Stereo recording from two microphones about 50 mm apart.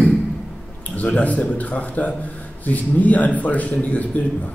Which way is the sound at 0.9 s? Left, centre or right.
Left.